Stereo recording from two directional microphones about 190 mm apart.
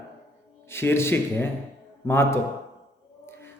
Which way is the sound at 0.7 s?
10° left (ahead or behind).